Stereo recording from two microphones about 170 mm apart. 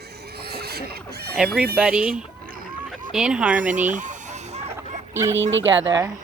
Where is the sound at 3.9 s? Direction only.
45° right (ahead or behind).